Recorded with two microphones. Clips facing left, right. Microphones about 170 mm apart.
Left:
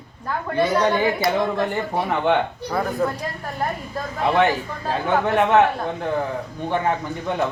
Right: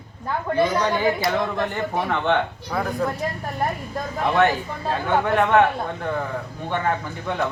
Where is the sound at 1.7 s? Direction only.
15° left (ahead or behind).